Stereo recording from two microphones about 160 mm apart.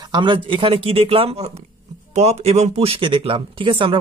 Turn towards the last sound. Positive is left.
turn(degrees=-30)  # may be behind; listen again after turning